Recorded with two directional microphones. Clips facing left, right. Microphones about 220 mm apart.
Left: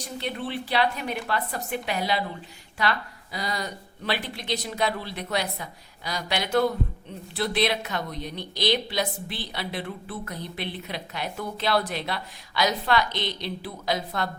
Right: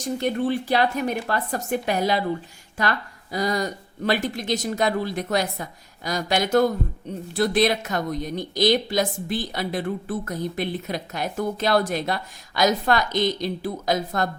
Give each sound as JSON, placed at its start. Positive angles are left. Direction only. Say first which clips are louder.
{"t": 0.0, "sound": "a woman's voice", "louder": "right 8 dB", "side_deg": -45}
{"t": 3.3, "sound": "a woman's voice", "louder": "right 7 dB", "side_deg": -45}